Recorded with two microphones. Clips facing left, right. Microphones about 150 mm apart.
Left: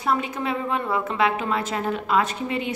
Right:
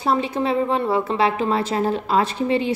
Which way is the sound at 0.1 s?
30° right (ahead or behind).